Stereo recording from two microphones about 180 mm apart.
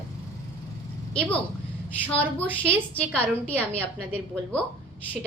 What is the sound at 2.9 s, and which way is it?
Speech, 10° left (ahead or behind).